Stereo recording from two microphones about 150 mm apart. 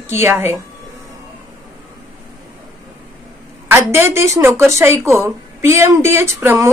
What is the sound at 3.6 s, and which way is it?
A woman's voice, 15° right (ahead or behind).